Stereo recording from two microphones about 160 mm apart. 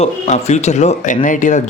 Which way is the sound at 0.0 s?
40° left (ahead or behind).